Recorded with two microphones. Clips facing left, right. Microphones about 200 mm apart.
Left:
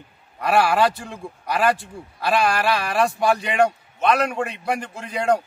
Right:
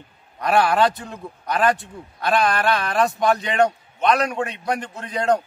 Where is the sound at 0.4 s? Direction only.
5° left (ahead or behind).